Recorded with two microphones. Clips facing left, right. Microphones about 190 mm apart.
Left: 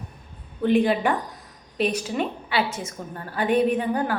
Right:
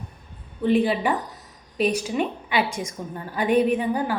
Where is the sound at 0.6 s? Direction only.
5° right (ahead or behind).